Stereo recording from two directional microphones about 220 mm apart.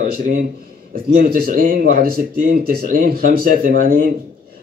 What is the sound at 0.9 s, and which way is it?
A man's voice, 40° right (ahead or behind).